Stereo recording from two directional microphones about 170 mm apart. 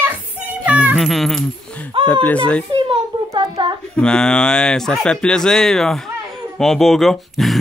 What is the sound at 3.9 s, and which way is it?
Speech, 5° left (ahead or behind).